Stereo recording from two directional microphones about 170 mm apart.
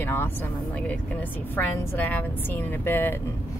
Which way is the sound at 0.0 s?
10° left (ahead or behind).